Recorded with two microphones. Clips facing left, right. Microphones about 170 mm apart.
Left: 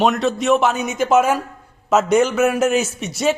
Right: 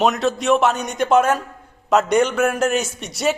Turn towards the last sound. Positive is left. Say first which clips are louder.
# left 2 dB
turn(degrees=0)  # may be behind; listen again after turning